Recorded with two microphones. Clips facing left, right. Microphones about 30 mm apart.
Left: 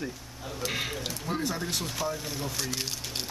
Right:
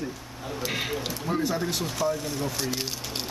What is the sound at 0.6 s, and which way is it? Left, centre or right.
Speech, centre.